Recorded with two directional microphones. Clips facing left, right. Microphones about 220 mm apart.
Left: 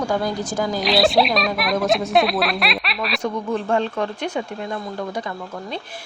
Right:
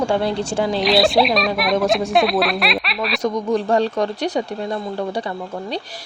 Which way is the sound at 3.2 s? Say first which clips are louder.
Right 5 dB; 35° right (ahead or behind).